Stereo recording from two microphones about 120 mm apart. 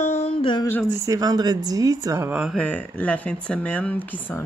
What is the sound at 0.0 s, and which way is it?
Music, 65° left (ahead or behind).